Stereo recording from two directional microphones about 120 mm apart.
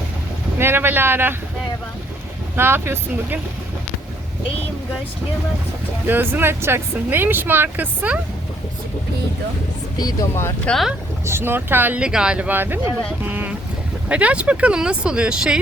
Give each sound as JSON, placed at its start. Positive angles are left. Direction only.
{"t": 0.6, "sound": "speech", "side_deg": -20}
{"t": 2.6, "sound": "speech", "side_deg": -20}
{"t": 6.1, "sound": "speech", "side_deg": -15}
{"t": 10.0, "sound": "speech", "side_deg": 30}
{"t": 10.7, "sound": "speech", "side_deg": 0}
{"t": 11.3, "sound": "speech", "side_deg": -20}